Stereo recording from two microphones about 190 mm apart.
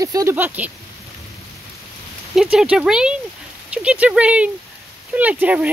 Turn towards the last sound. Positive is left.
turn(degrees=-10)  # may be behind; listen again after turning